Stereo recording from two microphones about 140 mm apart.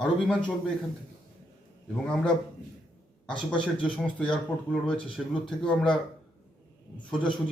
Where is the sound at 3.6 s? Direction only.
35° left (ahead or behind).